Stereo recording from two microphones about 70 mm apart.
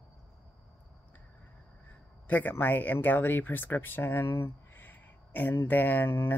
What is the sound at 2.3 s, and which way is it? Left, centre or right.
Speech, left.